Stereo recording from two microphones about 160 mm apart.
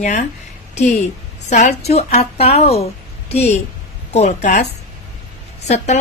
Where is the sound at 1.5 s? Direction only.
45° left (ahead or behind).